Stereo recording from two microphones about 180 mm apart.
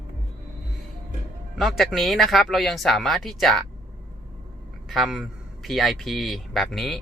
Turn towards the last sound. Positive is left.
turn(degrees=0)  # may be behind; listen again after turning